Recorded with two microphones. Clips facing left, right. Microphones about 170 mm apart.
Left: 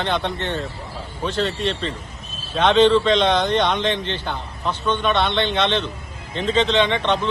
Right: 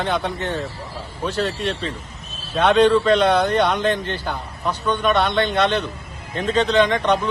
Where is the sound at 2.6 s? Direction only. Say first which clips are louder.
Even; 5° right (ahead or behind).